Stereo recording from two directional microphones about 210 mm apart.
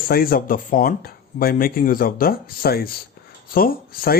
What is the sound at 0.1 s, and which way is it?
Speech, 45° left (ahead or behind).